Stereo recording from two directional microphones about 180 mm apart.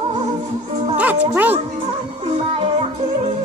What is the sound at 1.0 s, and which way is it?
Music, 10° right (ahead or behind).